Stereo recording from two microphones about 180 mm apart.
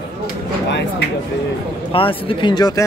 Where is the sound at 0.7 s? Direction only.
75° left (ahead or behind).